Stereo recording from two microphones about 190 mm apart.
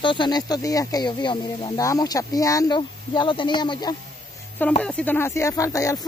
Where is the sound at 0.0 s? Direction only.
25° left (ahead or behind).